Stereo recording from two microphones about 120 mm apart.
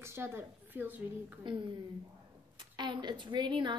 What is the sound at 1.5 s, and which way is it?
Speech, 45° right (ahead or behind).